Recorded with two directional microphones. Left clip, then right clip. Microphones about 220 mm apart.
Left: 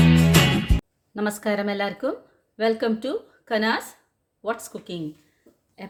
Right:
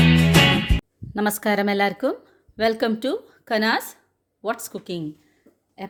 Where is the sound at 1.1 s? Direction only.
40° right (ahead or behind).